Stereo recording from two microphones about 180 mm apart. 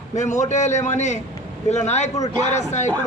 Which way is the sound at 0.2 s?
40° left (ahead or behind).